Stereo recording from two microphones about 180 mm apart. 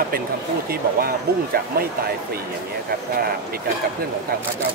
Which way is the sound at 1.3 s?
60° right (ahead or behind).